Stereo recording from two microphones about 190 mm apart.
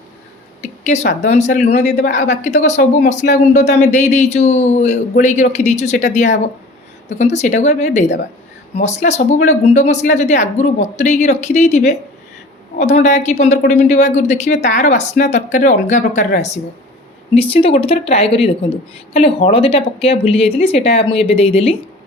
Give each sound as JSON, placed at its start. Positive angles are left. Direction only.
{"t": 0.6, "sound": "speech", "side_deg": 40}